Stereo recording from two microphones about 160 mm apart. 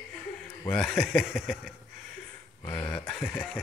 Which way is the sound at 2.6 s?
25° left (ahead or behind).